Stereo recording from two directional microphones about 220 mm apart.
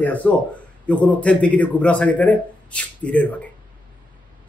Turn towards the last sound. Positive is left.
turn(degrees=5)  # may be behind; listen again after turning